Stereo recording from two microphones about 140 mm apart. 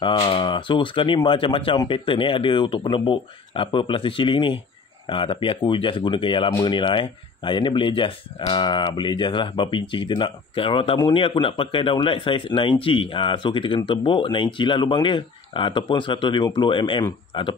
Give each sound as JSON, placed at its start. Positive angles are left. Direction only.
{"t": 0.0, "sound": "speech", "side_deg": 35}